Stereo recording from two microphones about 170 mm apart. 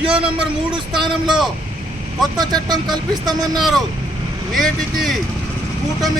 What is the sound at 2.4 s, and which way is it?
Speech, 25° right (ahead or behind).